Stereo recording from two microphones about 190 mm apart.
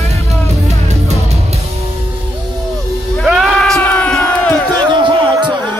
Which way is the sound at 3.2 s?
Centre (ahead or behind).